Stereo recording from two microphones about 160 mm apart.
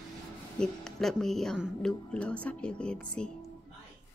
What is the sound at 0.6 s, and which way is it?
A woman's voice, 5° left (ahead or behind).